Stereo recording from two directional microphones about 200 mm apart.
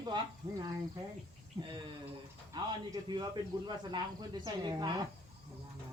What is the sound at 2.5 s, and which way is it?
Speech, 20° right (ahead or behind).